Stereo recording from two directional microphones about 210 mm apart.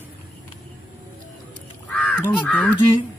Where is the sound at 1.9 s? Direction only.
5° left (ahead or behind).